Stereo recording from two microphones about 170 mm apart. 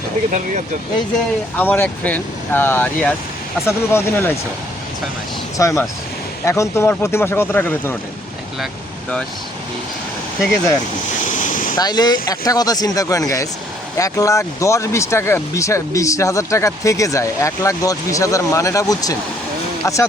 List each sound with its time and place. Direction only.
1.5 s speech: 10° left (ahead or behind)
5.5 s speech: 20° left (ahead or behind)
11.3 s waves: 45° left (ahead or behind)
11.8 s speech: 25° left (ahead or behind)